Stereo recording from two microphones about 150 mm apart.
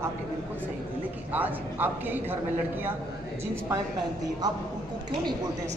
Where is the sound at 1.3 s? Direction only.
10° right (ahead or behind).